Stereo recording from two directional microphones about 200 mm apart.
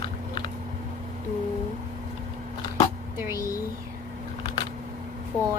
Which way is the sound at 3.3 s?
15° right (ahead or behind).